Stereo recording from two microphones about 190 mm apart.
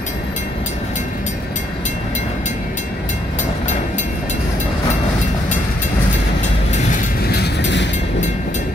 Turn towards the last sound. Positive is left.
turn(degrees=70)  # may be behind; listen again after turning